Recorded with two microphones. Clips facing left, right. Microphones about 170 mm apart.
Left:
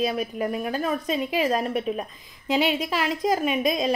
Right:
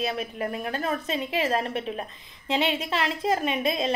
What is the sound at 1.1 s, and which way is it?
Speech, 30° right (ahead or behind).